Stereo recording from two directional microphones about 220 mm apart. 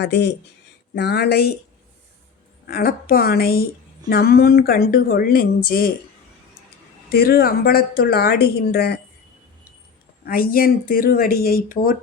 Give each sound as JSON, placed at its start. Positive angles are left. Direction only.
{"t": 0.0, "sound": "speech", "side_deg": 50}
{"t": 2.6, "sound": "speech", "side_deg": 40}
{"t": 7.1, "sound": "speech", "side_deg": 45}
{"t": 10.2, "sound": "speech", "side_deg": 40}